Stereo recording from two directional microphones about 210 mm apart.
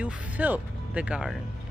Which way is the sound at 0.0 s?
5° right (ahead or behind).